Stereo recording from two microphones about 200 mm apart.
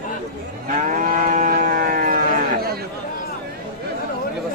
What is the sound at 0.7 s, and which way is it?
Moo, 40° right (ahead or behind).